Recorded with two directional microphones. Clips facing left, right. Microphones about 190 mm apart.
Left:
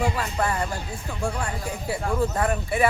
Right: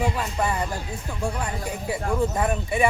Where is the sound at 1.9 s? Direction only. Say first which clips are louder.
Even; 10° right (ahead or behind).